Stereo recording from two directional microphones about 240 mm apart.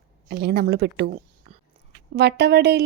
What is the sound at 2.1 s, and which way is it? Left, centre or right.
Speech, right.